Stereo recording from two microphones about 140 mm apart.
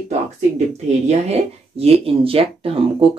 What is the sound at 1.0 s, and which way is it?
Speech, 50° right (ahead or behind).